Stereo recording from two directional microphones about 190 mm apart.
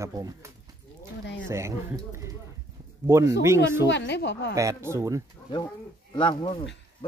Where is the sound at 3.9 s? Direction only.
65° left (ahead or behind).